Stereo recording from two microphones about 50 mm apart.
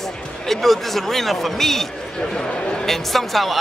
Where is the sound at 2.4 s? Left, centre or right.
Centre.